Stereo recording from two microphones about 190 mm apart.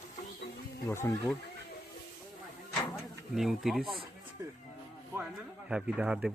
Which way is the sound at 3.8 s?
30° right (ahead or behind).